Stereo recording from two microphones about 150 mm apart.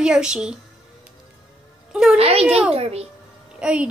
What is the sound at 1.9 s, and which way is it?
Speech, 5° right (ahead or behind).